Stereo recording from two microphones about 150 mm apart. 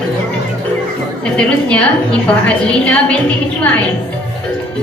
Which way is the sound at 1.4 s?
5° left (ahead or behind).